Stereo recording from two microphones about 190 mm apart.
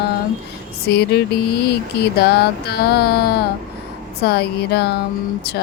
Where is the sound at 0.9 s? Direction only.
60° left (ahead or behind).